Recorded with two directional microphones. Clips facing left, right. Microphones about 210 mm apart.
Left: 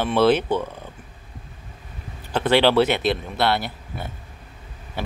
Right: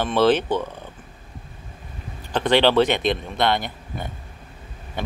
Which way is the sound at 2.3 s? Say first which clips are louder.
Even; 10° left (ahead or behind).